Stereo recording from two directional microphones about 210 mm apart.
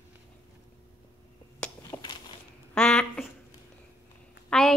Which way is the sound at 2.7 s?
5° left (ahead or behind).